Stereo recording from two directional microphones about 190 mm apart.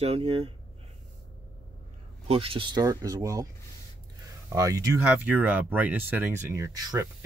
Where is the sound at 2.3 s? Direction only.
30° right (ahead or behind).